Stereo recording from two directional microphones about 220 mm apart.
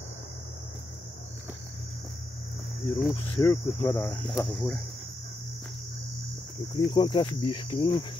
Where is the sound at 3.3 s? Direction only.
15° left (ahead or behind).